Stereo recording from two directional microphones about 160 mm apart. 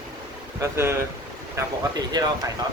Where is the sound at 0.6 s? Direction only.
15° right (ahead or behind).